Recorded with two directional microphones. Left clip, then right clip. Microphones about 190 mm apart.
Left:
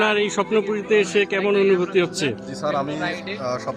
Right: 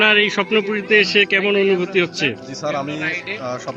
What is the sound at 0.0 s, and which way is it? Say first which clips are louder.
A man's voice: right 5 dB; 5° left (ahead or behind).